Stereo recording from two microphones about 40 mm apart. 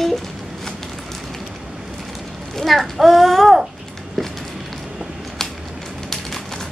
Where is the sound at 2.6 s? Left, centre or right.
Centre.